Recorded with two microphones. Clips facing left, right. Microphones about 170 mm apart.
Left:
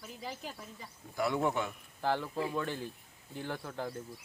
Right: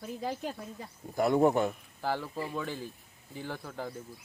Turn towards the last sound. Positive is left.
turn(degrees=0)  # may be behind; listen again after turning